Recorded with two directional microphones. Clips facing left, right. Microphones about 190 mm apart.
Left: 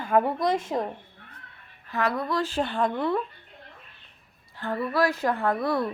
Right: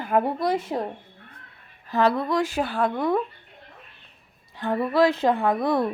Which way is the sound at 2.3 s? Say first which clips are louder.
Right 3 dB; 10° right (ahead or behind).